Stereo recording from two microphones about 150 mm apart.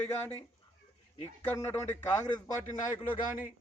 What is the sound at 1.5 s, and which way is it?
Speech, 20° left (ahead or behind).